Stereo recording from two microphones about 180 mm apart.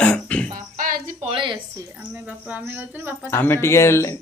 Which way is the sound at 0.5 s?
50° right (ahead or behind).